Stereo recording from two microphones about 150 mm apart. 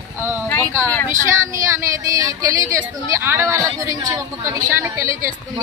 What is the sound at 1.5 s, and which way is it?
A woman's voice, 20° right (ahead or behind).